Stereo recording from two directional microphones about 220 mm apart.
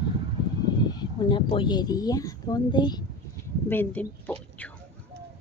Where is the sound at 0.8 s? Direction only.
20° left (ahead or behind).